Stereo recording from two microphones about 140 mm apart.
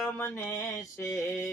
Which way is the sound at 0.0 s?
20° left (ahead or behind).